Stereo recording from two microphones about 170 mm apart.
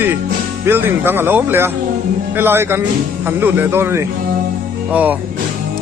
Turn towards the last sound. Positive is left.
turn(degrees=-10)  # may be behind; listen again after turning